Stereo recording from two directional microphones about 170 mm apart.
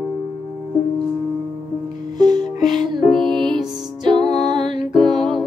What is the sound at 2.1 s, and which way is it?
Music, 25° right (ahead or behind).